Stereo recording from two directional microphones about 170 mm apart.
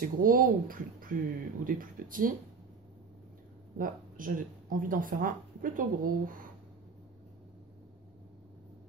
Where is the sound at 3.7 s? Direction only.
55° right (ahead or behind).